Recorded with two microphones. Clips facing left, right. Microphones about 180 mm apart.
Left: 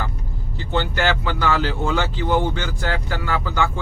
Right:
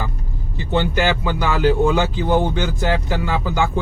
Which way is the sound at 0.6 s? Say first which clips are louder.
Right 3 dB; 15° right (ahead or behind).